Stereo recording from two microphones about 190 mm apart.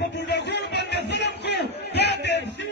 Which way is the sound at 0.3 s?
65° left (ahead or behind).